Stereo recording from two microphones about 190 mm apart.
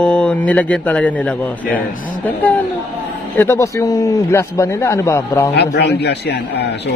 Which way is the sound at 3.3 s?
15° left (ahead or behind).